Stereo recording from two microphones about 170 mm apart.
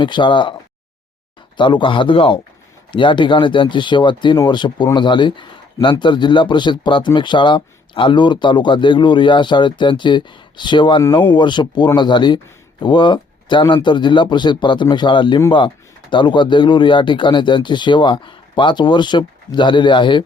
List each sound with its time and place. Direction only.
0.0 s speech: 30° left (ahead or behind)
1.5 s speech: 30° left (ahead or behind)